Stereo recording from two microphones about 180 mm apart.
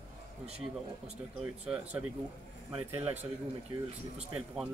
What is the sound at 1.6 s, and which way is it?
Speech, 5° right (ahead or behind).